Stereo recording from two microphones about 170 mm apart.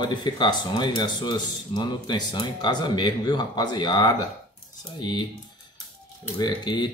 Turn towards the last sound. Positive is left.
turn(degrees=25)  # may be behind; listen again after turning